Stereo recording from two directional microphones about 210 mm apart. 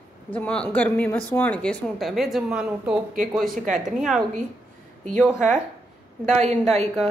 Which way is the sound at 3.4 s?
40° right (ahead or behind).